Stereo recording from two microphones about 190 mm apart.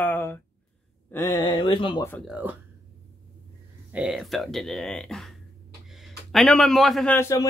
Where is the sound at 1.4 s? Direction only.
25° left (ahead or behind).